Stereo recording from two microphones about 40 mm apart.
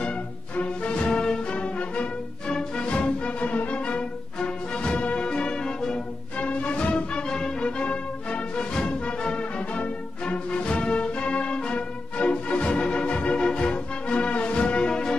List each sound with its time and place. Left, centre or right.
0.8 s music: left
1.5 s music: left
6.3 s music: left